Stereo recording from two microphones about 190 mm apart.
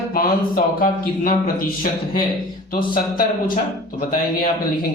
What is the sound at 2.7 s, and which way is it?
Speech, 45° left (ahead or behind).